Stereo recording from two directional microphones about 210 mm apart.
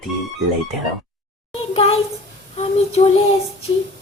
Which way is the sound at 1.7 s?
30° left (ahead or behind).